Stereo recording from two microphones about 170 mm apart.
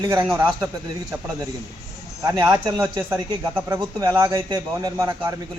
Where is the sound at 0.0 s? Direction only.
15° right (ahead or behind).